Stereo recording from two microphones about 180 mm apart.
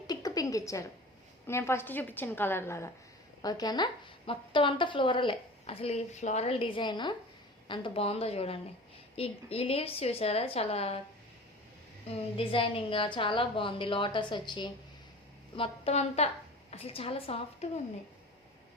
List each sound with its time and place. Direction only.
0.1 s a sound: 20° left (ahead or behind)
1.5 s a woman's voice: 15° left (ahead or behind); by 11.0 s 35° left (ahead or behind)
12.0 s a woman's voice: 30° left (ahead or behind)